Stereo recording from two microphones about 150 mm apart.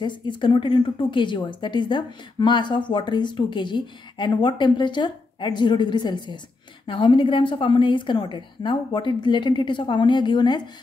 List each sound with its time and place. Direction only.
0.0 s speech: 30° left (ahead or behind)